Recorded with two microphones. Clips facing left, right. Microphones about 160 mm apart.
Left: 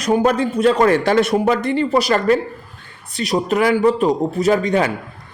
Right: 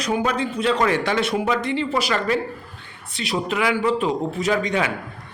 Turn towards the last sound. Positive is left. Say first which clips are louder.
# left 6 dB
turn(degrees=40)  # may be behind; listen again after turning